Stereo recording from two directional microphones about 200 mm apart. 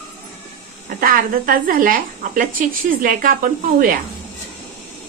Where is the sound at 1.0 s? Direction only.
45° right (ahead or behind).